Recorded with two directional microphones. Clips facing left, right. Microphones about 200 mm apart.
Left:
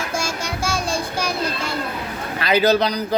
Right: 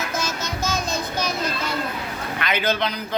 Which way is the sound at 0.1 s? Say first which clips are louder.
Left 2 dB; 10° left (ahead or behind).